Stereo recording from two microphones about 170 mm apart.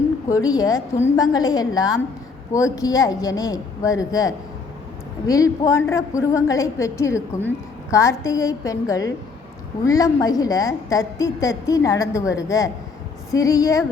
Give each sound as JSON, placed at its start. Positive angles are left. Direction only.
{"t": 0.3, "sound": "a woman's voice", "side_deg": 20}